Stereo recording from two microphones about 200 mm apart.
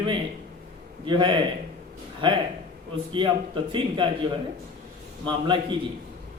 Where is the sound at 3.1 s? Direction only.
25° right (ahead or behind).